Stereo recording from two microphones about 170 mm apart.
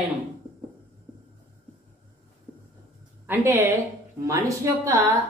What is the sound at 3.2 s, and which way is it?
A woman's voice, 15° right (ahead or behind).